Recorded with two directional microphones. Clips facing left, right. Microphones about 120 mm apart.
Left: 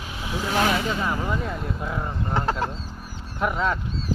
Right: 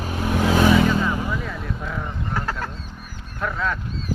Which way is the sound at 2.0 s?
25° left (ahead or behind).